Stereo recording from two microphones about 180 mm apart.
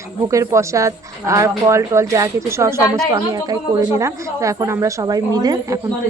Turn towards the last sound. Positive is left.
turn(degrees=-20)  # may be behind; listen again after turning